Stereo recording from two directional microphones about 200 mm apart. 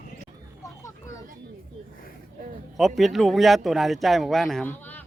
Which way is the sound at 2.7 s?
Centre (ahead or behind).